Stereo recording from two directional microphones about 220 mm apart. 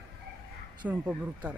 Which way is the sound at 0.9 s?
5° right (ahead or behind).